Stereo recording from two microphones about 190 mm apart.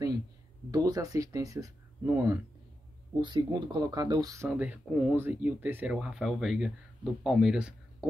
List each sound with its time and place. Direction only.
0.7 s speech: 20° right (ahead or behind)
3.2 s speech: 25° right (ahead or behind)
4.5 s speech: 5° right (ahead or behind)